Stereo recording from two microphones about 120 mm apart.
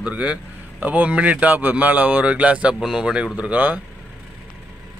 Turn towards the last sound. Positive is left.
turn(degrees=-15)  # may be behind; listen again after turning